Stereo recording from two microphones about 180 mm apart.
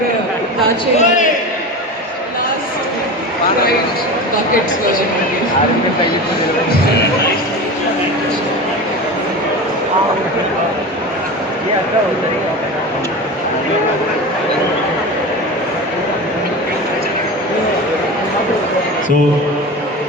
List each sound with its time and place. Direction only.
0.9 s a man's voice: 45° left (ahead or behind)